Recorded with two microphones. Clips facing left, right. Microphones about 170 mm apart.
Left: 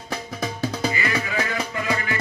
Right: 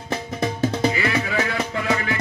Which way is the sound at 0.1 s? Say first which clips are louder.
Right 4 dB; 25° right (ahead or behind).